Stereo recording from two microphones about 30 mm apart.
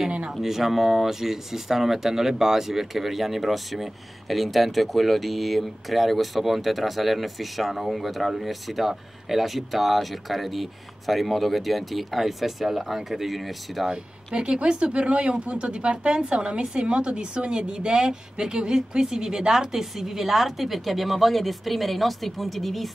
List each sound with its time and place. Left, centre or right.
0.3 s speech: centre
13.7 s speech: centre
14.3 s speech: right; by 22.8 s centre